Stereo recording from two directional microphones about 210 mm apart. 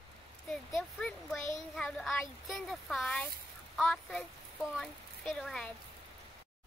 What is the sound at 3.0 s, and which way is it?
Speech, 5° left (ahead or behind).